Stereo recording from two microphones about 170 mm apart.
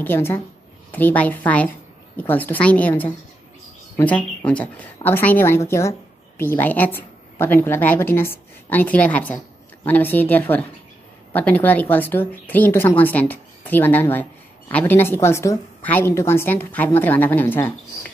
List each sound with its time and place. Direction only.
0.0 s a woman's voice: 15° left (ahead or behind)